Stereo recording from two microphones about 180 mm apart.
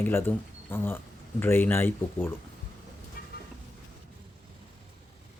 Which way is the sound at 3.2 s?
55° left (ahead or behind).